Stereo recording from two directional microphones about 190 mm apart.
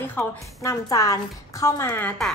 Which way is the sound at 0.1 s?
15° left (ahead or behind).